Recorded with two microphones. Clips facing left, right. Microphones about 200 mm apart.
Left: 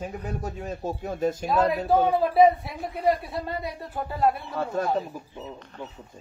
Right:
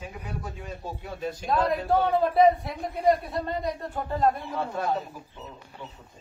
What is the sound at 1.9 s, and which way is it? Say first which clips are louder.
Speech: left 2 dB; 5° left (ahead or behind).